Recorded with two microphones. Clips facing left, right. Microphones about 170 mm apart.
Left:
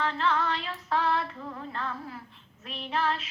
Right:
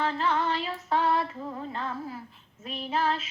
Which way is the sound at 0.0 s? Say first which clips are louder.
Right 1 dB; 25° right (ahead or behind).